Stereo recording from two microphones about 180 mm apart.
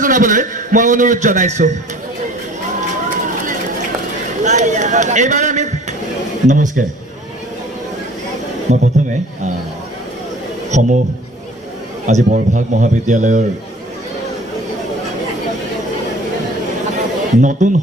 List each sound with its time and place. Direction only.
0.0 s a man's voice: 45° right (ahead or behind)
4.4 s a sound: 40° right (ahead or behind)
6.5 s a man's voice: 45° right (ahead or behind)
8.7 s a man's voice: 45° right (ahead or behind)
10.7 s a man's voice: 40° right (ahead or behind)
12.0 s a man's voice: 45° right (ahead or behind)
17.4 s a man's voice: 45° right (ahead or behind)